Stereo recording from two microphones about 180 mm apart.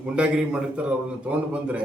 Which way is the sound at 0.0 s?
5° right (ahead or behind).